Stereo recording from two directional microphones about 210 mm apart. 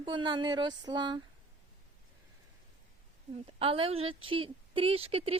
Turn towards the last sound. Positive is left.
turn(degrees=-25)  # may be behind; listen again after turning